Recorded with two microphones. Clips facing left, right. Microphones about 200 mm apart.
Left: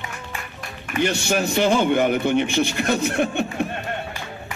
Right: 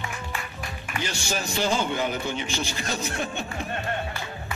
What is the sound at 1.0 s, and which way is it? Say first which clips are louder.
A man's voice: left 10 dB; 60° left (ahead or behind).